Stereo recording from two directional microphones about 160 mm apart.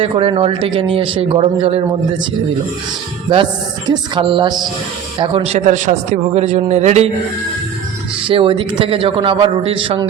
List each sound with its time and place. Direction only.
0.0 s speech: 35° right (ahead or behind)
3.8 s speech: 30° right (ahead or behind)
5.5 s a man's voice: 50° right (ahead or behind)
8.3 s speech: 35° right (ahead or behind)